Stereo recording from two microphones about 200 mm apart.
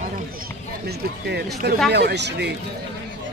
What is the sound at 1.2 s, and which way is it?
Speech, 55° right (ahead or behind).